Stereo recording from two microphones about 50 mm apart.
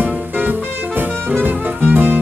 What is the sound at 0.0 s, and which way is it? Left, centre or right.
Music, right.